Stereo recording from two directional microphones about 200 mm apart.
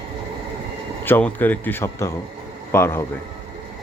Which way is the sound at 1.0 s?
10° left (ahead or behind).